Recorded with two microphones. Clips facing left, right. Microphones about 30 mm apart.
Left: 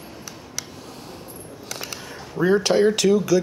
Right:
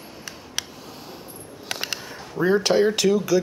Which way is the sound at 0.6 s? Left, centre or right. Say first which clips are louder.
Right 4 dB; right.